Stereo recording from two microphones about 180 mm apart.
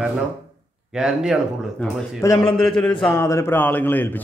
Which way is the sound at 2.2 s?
20° left (ahead or behind).